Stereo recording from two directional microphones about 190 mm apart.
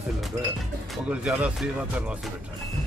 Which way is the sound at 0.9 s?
5° right (ahead or behind).